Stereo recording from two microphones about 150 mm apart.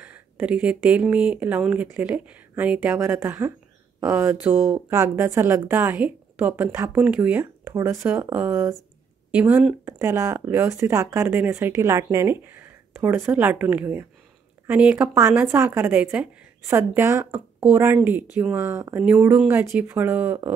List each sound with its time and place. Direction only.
0.0 s speech: 10° right (ahead or behind)
9.8 s speech: 20° right (ahead or behind)